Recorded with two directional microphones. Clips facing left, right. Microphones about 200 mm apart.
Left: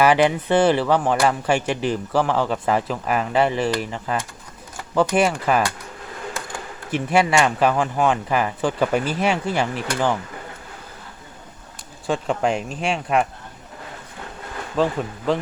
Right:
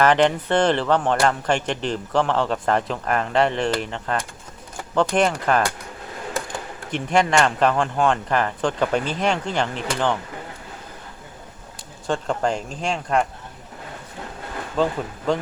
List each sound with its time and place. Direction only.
0.0 s speech: 10° left (ahead or behind)
6.9 s speech: 5° left (ahead or behind)
12.0 s speech: 5° left (ahead or behind)
14.8 s speech: 5° left (ahead or behind)